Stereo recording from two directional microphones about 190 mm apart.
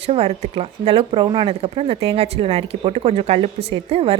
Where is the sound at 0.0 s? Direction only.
30° right (ahead or behind).